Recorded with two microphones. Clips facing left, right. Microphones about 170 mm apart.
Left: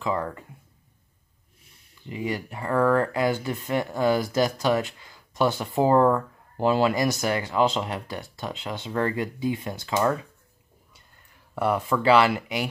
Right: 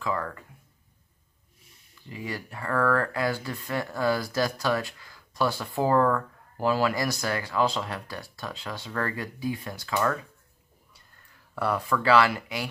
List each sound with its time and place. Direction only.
0.0 s speech: 20° left (ahead or behind)
2.0 s speech: 20° left (ahead or behind)
11.5 s speech: 20° left (ahead or behind)